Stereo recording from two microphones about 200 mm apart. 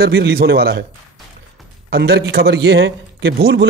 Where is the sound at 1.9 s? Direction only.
55° right (ahead or behind).